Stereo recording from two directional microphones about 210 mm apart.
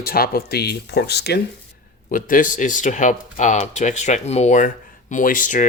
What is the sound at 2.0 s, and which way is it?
Speech, 40° left (ahead or behind).